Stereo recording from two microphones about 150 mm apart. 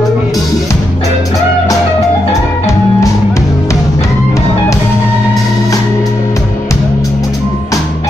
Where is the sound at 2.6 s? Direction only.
20° left (ahead or behind).